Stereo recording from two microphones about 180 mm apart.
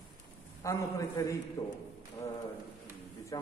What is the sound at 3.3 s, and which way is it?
Speech, 20° left (ahead or behind).